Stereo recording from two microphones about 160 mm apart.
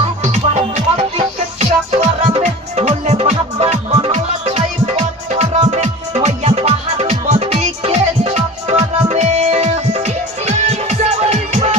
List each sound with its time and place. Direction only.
0.2 s music: 45° right (ahead or behind)